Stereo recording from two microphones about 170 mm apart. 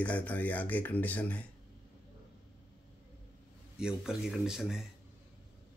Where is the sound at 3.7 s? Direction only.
5° right (ahead or behind).